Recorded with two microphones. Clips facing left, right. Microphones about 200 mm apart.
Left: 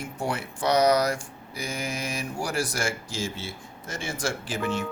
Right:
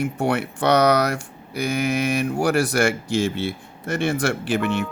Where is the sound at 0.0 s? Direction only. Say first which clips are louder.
Right 8 dB; 65° right (ahead or behind).